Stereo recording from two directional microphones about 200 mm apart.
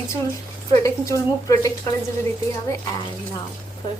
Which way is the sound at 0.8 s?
15° left (ahead or behind).